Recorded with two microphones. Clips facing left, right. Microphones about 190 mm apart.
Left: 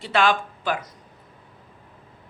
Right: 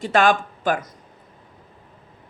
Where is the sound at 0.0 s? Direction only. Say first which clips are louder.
Right 3 dB; 45° right (ahead or behind).